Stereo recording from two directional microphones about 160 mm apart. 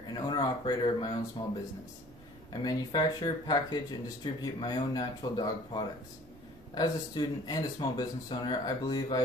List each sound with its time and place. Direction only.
0.1 s speech: 25° left (ahead or behind)